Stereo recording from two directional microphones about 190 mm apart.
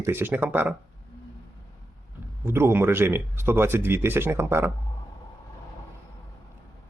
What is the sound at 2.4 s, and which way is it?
Speech, 10° right (ahead or behind).